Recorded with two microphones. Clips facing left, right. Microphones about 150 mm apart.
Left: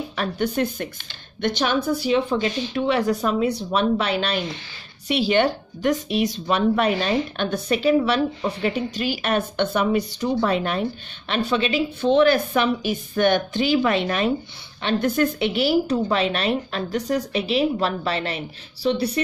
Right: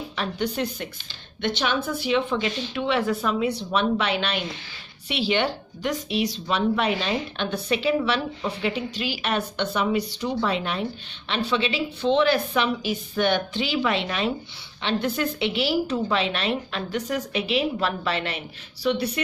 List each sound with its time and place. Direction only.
0.1 s a woman's voice: 50° left (ahead or behind); by 19.2 s 35° left (ahead or behind)